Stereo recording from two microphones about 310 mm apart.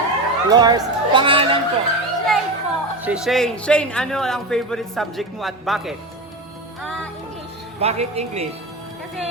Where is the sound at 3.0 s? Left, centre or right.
Centre.